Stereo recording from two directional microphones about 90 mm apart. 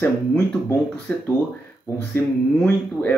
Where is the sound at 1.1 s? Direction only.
15° left (ahead or behind).